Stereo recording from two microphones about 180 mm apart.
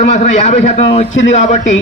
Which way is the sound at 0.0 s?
45° left (ahead or behind).